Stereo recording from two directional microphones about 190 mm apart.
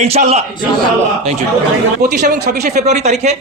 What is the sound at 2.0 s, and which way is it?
Speech, 60° right (ahead or behind).